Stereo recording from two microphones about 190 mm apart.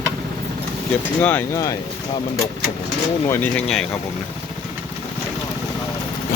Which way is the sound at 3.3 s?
10° left (ahead or behind).